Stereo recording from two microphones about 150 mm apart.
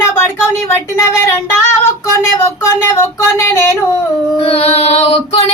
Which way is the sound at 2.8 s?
15° left (ahead or behind).